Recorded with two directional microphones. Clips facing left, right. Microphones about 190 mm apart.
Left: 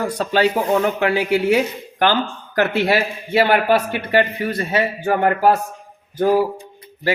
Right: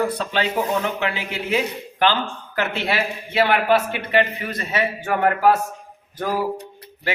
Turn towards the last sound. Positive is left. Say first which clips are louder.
# left 8 dB
turn(degrees=25)  # may be behind; listen again after turning